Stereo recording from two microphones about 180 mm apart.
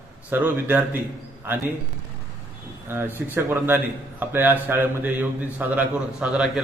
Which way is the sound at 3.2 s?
10° right (ahead or behind).